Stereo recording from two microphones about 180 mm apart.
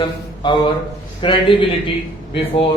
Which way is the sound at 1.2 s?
30° left (ahead or behind).